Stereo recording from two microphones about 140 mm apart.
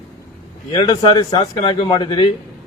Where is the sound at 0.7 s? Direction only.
40° left (ahead or behind).